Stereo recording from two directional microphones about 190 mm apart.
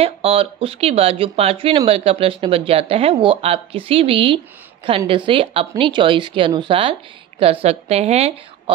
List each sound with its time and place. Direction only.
0.0 s a woman's voice: 30° right (ahead or behind)